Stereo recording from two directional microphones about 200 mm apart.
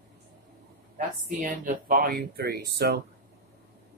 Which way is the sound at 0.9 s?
45° right (ahead or behind).